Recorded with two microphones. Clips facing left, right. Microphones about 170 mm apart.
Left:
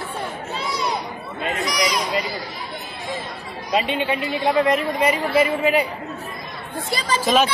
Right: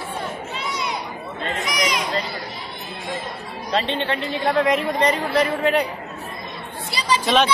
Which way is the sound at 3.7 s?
10° left (ahead or behind).